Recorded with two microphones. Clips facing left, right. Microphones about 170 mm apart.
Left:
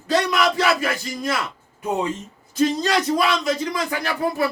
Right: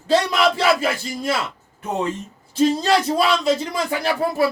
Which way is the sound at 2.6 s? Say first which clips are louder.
Right 2 dB; 30° right (ahead or behind).